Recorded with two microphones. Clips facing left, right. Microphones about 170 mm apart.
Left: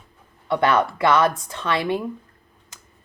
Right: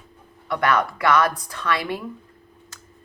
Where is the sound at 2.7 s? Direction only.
20° left (ahead or behind).